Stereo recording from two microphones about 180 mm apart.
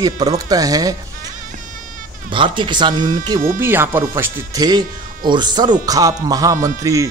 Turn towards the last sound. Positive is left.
turn(degrees=-20)  # may be behind; listen again after turning